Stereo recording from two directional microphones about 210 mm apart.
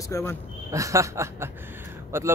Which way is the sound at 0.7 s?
15° right (ahead or behind).